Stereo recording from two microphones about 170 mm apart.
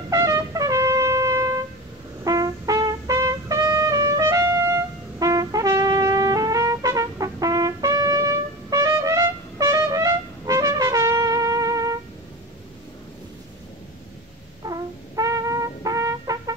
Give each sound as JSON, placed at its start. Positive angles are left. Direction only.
{"t": 0.1, "sound": "wind instrument", "side_deg": -20}
{"t": 2.2, "sound": "trumpet", "side_deg": -20}
{"t": 14.6, "sound": "brass instrument", "side_deg": -20}